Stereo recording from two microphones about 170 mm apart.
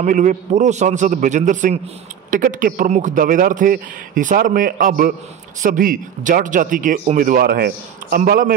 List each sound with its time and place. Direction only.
0.0 s speech: 50° right (ahead or behind)